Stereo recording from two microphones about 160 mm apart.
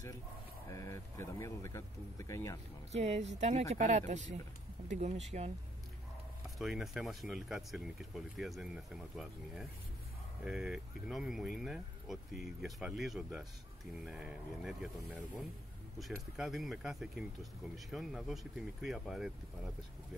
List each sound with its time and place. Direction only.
0.7 s speech: 20° left (ahead or behind)
2.9 s a woman's voice: 45° right (ahead or behind)
6.6 s speech: centre (ahead or behind)